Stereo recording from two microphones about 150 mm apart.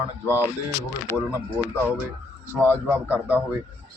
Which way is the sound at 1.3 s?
10° right (ahead or behind).